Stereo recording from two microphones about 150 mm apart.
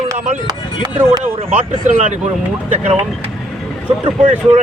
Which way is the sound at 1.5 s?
55° right (ahead or behind).